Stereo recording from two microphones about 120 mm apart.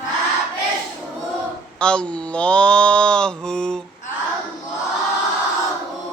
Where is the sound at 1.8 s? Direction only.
10° left (ahead or behind).